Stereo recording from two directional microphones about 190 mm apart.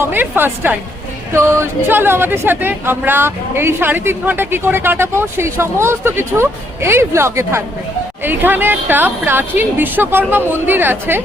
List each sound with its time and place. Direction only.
0.0 s a woman's voice: 10° right (ahead or behind)